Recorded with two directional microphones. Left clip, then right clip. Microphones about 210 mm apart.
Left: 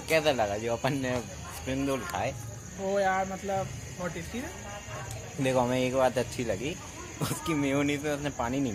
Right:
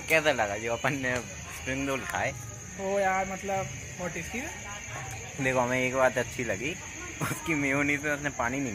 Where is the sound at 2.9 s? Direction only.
25° right (ahead or behind).